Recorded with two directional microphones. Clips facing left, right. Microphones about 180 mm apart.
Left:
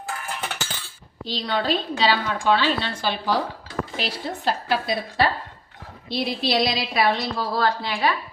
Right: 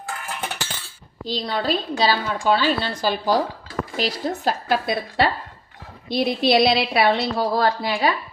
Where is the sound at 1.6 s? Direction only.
40° right (ahead or behind); by 7.0 s 65° right (ahead or behind).